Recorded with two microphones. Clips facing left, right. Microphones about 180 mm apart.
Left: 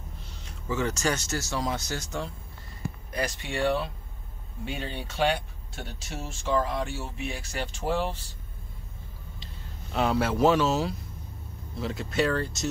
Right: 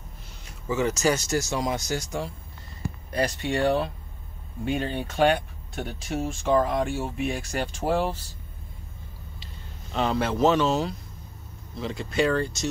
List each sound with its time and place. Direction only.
0.5 s speech: 10° right (ahead or behind)
3.1 s speech: 35° right (ahead or behind)
9.9 s speech: 5° left (ahead or behind)